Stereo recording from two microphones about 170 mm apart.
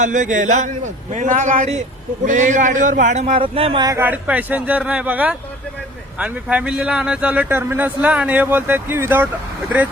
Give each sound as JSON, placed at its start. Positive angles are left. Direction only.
{"t": 0.0, "sound": "a man's voice", "side_deg": -50}
{"t": 3.3, "sound": "speech", "side_deg": -30}
{"t": 3.8, "sound": "a man's voice", "side_deg": -15}